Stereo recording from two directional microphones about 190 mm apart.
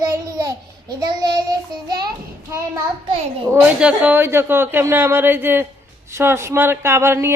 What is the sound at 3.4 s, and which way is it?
Speech, 10° right (ahead or behind).